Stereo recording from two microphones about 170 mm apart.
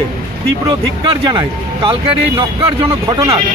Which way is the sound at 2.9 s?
20° right (ahead or behind).